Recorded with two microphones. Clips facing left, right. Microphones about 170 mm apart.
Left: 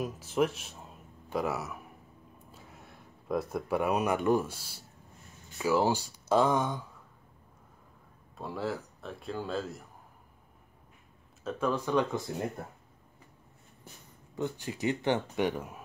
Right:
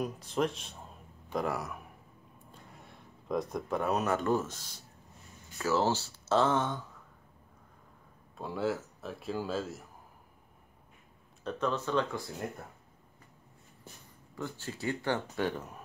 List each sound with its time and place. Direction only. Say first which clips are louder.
0.0 s a man's voice: left 2 dB; 5° left (ahead or behind)
8.4 s a man's voice: right 2 dB; centre (ahead or behind)
11.4 s speech: left 2 dB; 10° left (ahead or behind)
14.3 s speech: left 5 dB; 15° left (ahead or behind)